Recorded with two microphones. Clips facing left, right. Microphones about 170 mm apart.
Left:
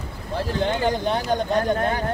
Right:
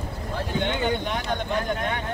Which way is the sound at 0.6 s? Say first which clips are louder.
Left 4 dB; 35° left (ahead or behind).